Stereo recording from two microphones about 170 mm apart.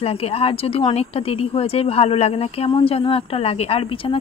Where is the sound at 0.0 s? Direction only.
35° left (ahead or behind).